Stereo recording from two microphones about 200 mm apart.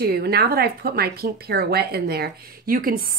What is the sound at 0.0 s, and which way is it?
A woman's voice, 50° right (ahead or behind).